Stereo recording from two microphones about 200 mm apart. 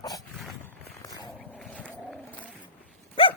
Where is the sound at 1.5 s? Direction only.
5° left (ahead or behind).